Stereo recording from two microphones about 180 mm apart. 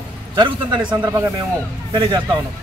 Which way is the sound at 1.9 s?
25° right (ahead or behind).